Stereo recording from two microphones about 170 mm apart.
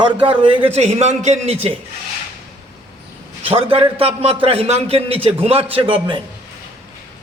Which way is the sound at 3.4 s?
35° right (ahead or behind).